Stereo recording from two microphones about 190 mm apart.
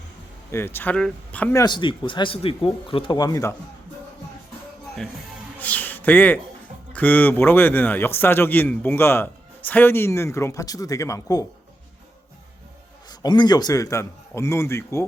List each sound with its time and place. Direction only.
0.5 s speech: 10° left (ahead or behind)
1.6 s speech: 25° left (ahead or behind)
5.5 s a sound: 10° left (ahead or behind)
6.9 s speech: 10° left (ahead or behind)
13.1 s speech: 20° left (ahead or behind)